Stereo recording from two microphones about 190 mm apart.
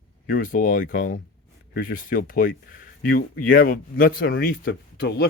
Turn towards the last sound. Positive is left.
turn(degrees=65)  # may be behind; listen again after turning